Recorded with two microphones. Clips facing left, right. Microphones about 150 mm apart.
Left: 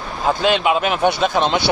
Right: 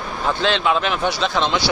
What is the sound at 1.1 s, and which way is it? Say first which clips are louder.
Speech: left 4 dB; 55° left (ahead or behind).